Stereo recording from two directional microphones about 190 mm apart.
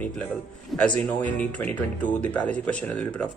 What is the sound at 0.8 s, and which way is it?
A man's voice, 5° left (ahead or behind).